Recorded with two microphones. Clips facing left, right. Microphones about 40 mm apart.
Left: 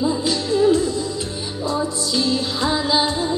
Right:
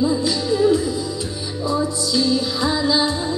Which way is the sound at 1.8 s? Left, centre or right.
Centre.